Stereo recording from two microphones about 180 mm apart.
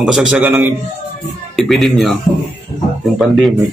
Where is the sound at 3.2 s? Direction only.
Centre (ahead or behind).